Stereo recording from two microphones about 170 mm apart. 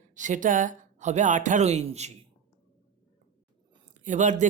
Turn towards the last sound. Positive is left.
turn(degrees=-45)  # may be behind; listen again after turning